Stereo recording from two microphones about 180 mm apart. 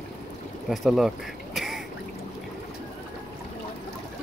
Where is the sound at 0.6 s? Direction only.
Centre (ahead or behind).